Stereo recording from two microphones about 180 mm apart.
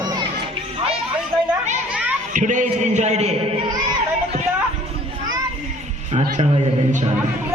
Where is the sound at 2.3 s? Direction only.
45° right (ahead or behind).